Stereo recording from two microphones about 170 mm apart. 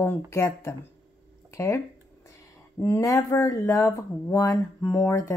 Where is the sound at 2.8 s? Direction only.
15° left (ahead or behind).